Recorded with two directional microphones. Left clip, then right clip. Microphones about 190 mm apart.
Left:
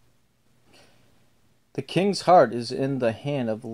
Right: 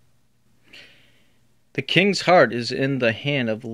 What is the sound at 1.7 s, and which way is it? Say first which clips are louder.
Speech: right 6 dB; 30° right (ahead or behind).